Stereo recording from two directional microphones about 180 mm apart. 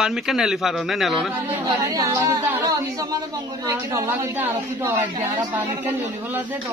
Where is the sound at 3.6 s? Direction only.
15° right (ahead or behind).